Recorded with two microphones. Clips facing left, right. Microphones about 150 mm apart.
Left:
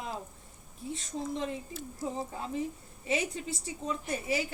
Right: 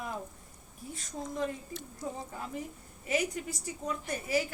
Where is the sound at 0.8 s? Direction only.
25° left (ahead or behind).